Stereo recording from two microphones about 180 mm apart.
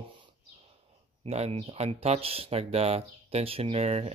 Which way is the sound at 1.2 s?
35° right (ahead or behind).